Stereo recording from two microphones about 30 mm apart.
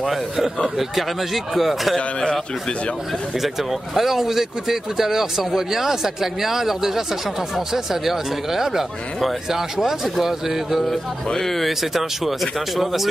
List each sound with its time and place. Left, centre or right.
0.0 s speech: centre
2.0 s a man's voice: left
3.3 s speech: centre
11.3 s speech: centre
11.8 s speech: centre